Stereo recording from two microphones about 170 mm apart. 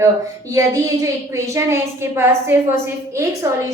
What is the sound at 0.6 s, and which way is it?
A woman's voice, 20° right (ahead or behind).